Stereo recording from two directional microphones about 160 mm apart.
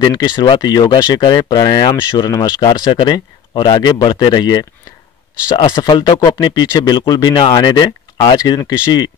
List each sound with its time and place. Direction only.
0.0 s speech: 25° left (ahead or behind)